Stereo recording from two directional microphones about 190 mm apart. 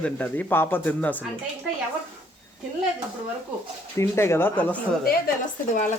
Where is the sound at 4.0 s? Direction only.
15° left (ahead or behind).